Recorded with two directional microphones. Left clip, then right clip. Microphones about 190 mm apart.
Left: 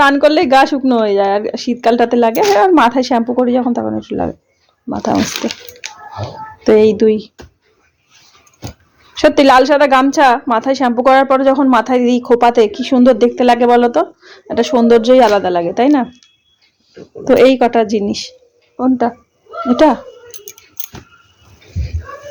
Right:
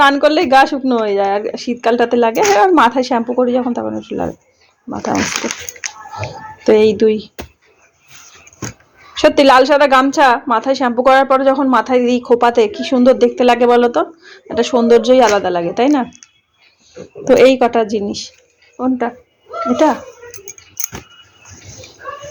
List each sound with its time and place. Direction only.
0.0 s a woman's voice: 20° left (ahead or behind); by 5.5 s 35° left (ahead or behind)
6.7 s speech: 15° left (ahead or behind)
9.1 s a woman's voice: 20° left (ahead or behind)
16.0 s a sound: 30° left (ahead or behind)
17.2 s a woman's voice: 15° left (ahead or behind); by 20.0 s 30° left (ahead or behind)